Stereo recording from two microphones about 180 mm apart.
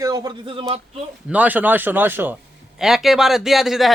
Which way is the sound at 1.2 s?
10° right (ahead or behind).